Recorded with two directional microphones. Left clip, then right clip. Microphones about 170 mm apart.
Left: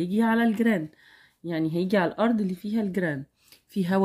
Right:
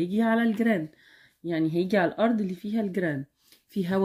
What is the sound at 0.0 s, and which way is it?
Speech, 30° left (ahead or behind).